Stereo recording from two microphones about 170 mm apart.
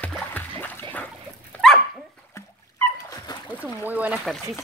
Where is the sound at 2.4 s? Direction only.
15° left (ahead or behind).